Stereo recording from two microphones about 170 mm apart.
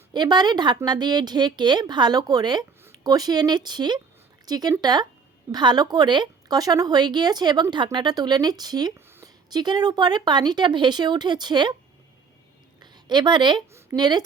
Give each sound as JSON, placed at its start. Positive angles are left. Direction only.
{"t": 0.1, "sound": "speech", "side_deg": -25}
{"t": 9.0, "sound": "a sound", "side_deg": -15}
{"t": 9.5, "sound": "speech", "side_deg": -25}
{"t": 12.8, "sound": "a woman's voice", "side_deg": -25}